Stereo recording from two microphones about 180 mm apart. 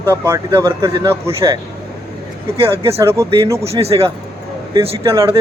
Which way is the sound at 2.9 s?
15° right (ahead or behind).